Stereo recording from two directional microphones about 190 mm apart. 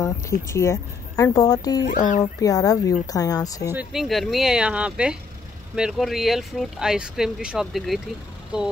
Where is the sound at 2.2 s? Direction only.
20° left (ahead or behind).